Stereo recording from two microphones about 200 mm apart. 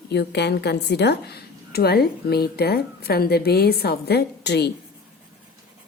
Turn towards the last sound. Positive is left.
turn(degrees=55)  # may be behind; listen again after turning